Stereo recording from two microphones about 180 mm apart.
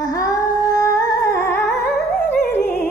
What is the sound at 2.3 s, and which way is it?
Music, 10° left (ahead or behind).